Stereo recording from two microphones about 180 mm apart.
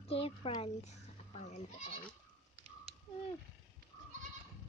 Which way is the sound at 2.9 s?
35° right (ahead or behind).